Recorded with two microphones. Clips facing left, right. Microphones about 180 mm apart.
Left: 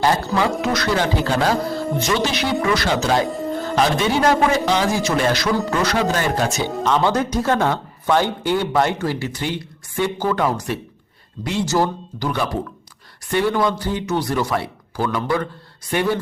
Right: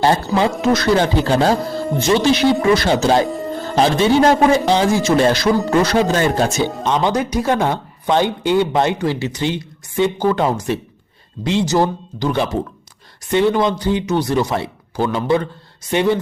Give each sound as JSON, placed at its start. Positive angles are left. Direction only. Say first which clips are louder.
{"t": 0.0, "sound": "speech", "louder": "right 3 dB", "side_deg": -25}
{"t": 3.2, "sound": "music", "louder": "right 1 dB", "side_deg": 0}
{"t": 3.8, "sound": "speech", "louder": "right 5 dB", "side_deg": -30}